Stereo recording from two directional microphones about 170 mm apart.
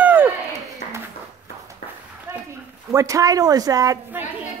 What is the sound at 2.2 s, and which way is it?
Speech, 15° right (ahead or behind).